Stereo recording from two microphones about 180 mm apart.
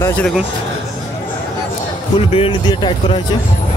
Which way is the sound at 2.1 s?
30° left (ahead or behind).